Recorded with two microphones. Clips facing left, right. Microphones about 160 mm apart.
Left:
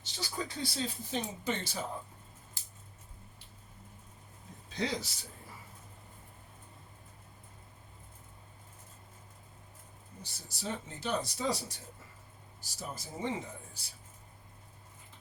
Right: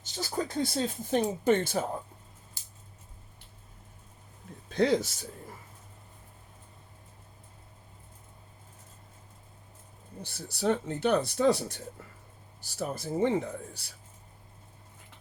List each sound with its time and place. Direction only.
0.0 s speech: 45° right (ahead or behind)
4.7 s a man's voice: 50° right (ahead or behind)
10.2 s speech: 60° right (ahead or behind)
12.6 s speech: 65° right (ahead or behind)